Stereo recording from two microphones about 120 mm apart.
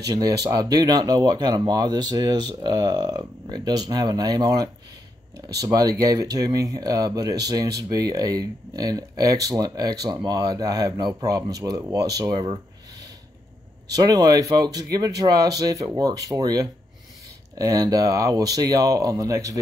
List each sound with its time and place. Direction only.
0.1 s speech: 35° right (ahead or behind)
14.1 s speech: 30° right (ahead or behind)